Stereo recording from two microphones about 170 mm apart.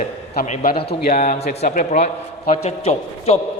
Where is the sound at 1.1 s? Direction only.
45° left (ahead or behind).